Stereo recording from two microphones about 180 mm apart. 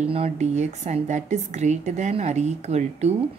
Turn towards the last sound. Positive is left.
turn(degrees=-40)  # may be behind; listen again after turning